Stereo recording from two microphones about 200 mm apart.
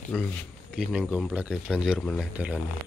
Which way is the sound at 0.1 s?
Centre (ahead or behind).